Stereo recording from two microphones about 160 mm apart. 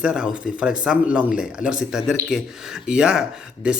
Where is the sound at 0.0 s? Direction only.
5° right (ahead or behind).